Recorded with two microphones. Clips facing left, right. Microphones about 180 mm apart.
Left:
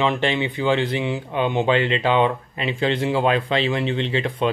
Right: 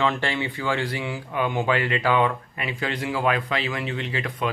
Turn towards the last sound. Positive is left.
turn(degrees=25)  # may be behind; listen again after turning